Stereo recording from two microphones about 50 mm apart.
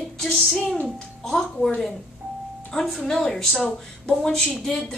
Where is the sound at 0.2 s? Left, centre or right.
Centre.